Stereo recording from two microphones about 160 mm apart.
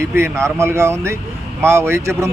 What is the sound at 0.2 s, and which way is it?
Speech, 15° right (ahead or behind).